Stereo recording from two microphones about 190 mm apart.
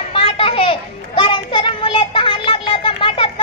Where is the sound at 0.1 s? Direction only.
30° left (ahead or behind).